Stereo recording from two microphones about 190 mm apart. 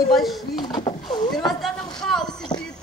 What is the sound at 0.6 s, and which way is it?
Speech, 25° left (ahead or behind).